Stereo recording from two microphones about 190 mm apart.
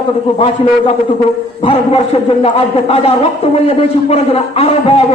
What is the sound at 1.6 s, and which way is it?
A man's voice, 30° left (ahead or behind).